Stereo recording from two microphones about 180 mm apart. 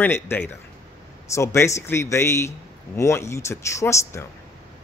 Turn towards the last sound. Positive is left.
turn(degrees=15)  # may be behind; listen again after turning